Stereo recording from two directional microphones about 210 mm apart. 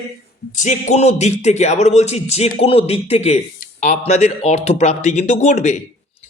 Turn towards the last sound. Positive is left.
turn(degrees=30)  # may be behind; listen again after turning